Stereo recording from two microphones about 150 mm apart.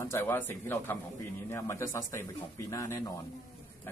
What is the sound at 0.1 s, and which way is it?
A man's voice, 15° left (ahead or behind).